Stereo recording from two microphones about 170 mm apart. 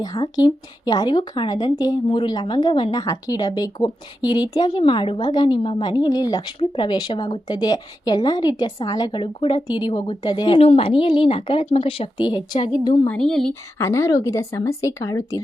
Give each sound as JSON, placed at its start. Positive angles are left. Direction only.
{"t": 0.0, "sound": "a woman's voice", "side_deg": 20}
{"t": 13.1, "sound": "speech", "side_deg": 5}
{"t": 13.5, "sound": "speech", "side_deg": 15}